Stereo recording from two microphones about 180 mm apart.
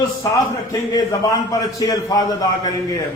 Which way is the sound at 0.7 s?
20° left (ahead or behind).